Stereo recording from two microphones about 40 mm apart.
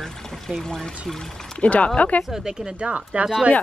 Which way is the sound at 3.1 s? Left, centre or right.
Right.